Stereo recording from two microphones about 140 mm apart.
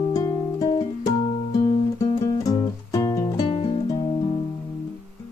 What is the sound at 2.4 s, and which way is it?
Music, 25° left (ahead or behind).